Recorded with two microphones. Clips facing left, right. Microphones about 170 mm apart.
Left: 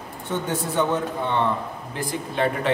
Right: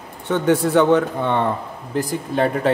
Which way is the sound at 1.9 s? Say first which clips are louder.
Right 6 dB; 40° right (ahead or behind).